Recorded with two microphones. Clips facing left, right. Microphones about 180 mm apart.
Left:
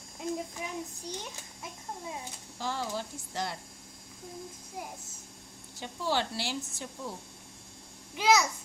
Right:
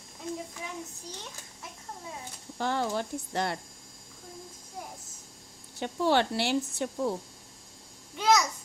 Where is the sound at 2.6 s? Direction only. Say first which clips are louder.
Right 5 dB; 60° right (ahead or behind).